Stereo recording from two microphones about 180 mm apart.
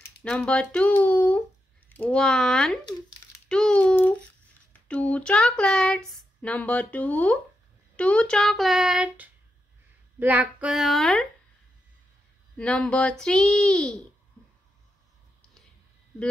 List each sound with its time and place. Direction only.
0.2 s speech: 5° left (ahead or behind)
2.8 s speech: 25° left (ahead or behind)
3.4 s a child's voice: 5° left (ahead or behind)
12.5 s speech: 5° left (ahead or behind)